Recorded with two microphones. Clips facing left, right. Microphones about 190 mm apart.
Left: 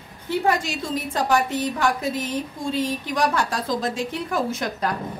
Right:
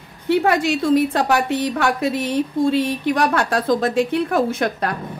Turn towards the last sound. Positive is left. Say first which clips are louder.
# right 5 dB
turn(degrees=-60)  # may be behind; listen again after turning